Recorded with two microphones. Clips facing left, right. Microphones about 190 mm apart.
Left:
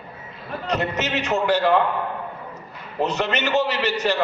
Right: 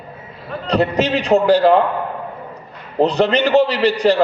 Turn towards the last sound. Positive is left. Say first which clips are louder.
# right 7 dB
turn(degrees=-35)  # may be behind; listen again after turning